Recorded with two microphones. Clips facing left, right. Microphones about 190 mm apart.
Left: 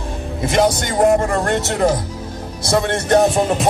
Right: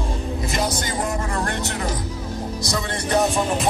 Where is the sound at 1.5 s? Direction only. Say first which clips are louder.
Left 9 dB; 80° left.